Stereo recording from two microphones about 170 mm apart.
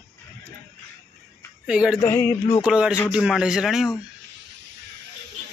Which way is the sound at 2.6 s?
5° right (ahead or behind).